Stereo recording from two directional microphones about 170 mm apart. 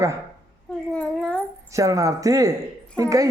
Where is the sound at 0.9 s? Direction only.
5° left (ahead or behind).